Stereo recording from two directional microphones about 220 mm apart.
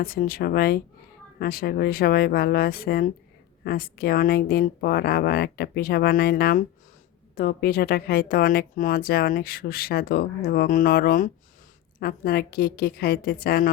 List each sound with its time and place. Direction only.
0.0 s a woman's voice: 40° left (ahead or behind)